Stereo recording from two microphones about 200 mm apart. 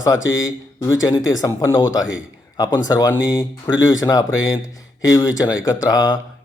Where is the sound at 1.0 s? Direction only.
15° left (ahead or behind).